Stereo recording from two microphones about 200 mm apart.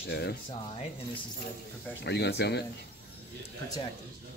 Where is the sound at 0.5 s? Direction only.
30° left (ahead or behind).